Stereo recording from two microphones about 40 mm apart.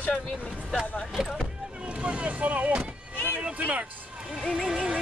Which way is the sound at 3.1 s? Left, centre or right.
Left.